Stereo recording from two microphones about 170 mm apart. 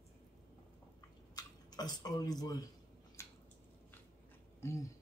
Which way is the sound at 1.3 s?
25° left (ahead or behind).